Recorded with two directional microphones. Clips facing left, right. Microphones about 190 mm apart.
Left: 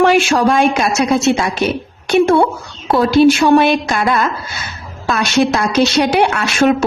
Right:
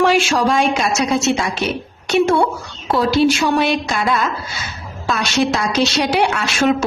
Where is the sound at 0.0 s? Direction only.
55° left (ahead or behind).